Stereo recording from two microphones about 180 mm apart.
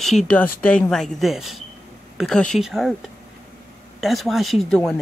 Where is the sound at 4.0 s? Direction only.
Centre (ahead or behind).